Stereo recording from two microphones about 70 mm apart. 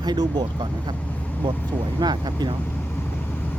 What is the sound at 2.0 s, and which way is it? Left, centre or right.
Speech, right.